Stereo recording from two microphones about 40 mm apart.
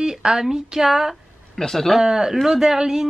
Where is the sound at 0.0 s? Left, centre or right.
Centre.